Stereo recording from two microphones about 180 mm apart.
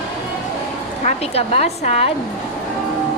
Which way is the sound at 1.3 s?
35° left (ahead or behind).